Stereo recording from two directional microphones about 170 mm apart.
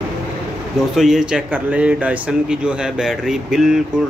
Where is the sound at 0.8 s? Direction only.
5° right (ahead or behind).